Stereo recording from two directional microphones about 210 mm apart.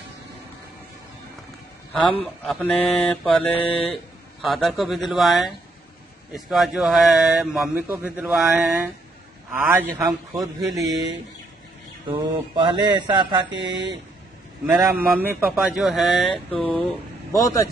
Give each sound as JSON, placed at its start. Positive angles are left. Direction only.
{"t": 2.4, "sound": "mantra", "side_deg": 5}
{"t": 9.5, "sound": "a man's voice", "side_deg": -10}
{"t": 12.1, "sound": "mantra", "side_deg": -20}
{"t": 14.9, "sound": "mantra", "side_deg": -10}
{"t": 17.4, "sound": "speech", "side_deg": 15}